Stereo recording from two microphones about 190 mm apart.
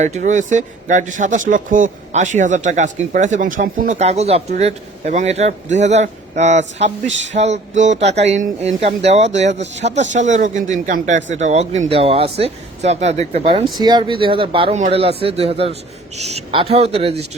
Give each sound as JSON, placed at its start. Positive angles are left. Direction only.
{"t": 0.0, "sound": "speech", "side_deg": -40}